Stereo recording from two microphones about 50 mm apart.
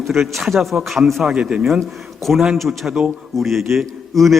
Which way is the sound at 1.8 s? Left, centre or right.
Centre.